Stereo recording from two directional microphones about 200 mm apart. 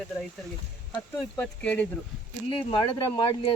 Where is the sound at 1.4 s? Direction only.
10° left (ahead or behind).